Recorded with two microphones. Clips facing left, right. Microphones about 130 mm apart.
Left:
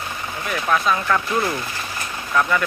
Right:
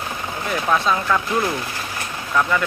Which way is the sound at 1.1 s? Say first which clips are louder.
Even; 15° right (ahead or behind).